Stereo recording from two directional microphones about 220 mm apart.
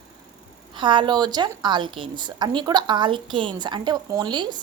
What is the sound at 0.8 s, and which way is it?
A woman's voice, 20° right (ahead or behind).